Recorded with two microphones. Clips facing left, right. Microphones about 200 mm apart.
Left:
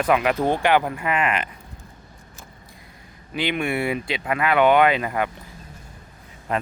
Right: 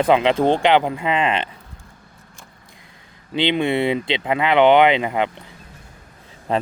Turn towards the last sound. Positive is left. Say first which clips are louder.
# right 4 dB
turn(degrees=-30)  # may be behind; listen again after turning